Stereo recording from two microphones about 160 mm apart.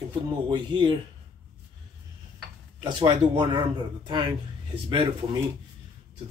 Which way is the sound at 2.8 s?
30° right (ahead or behind).